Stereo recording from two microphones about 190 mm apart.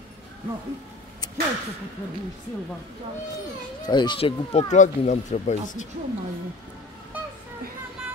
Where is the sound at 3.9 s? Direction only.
25° left (ahead or behind).